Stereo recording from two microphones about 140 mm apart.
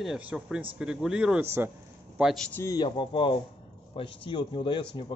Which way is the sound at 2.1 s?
Centre (ahead or behind).